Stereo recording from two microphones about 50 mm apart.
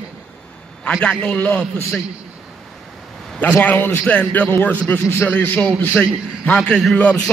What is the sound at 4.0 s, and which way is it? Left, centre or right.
A man's voice, left.